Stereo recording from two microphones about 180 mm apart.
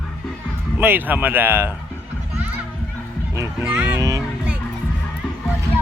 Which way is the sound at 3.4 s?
10° right (ahead or behind).